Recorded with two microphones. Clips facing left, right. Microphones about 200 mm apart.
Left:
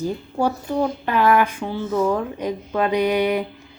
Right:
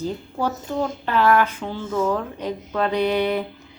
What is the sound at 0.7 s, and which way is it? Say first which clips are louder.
A woman's voice: left 3 dB; 10° left (ahead or behind).